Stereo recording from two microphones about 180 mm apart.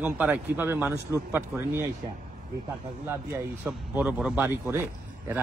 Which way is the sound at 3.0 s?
10° right (ahead or behind).